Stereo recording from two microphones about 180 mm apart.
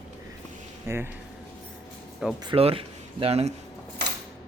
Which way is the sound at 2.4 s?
30° right (ahead or behind).